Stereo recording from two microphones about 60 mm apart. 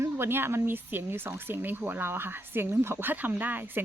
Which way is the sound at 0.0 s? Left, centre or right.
Right.